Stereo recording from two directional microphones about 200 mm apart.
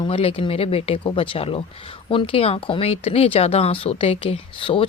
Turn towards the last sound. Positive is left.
turn(degrees=25)  # may be behind; listen again after turning